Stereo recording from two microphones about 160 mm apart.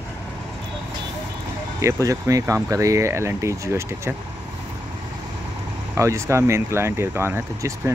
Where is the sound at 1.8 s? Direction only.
20° right (ahead or behind).